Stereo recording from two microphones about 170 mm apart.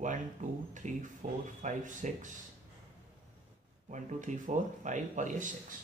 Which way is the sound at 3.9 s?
45° right (ahead or behind).